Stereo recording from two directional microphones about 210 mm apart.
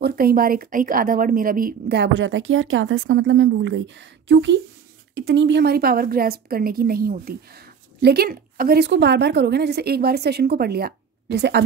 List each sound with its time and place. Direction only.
0.0 s a woman's voice: 45° right (ahead or behind)